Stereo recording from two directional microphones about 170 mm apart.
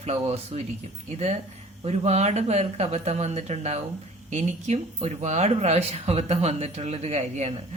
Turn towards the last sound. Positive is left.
turn(degrees=-40)  # may be behind; listen again after turning